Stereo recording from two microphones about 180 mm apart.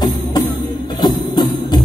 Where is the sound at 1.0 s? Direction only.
25° left (ahead or behind).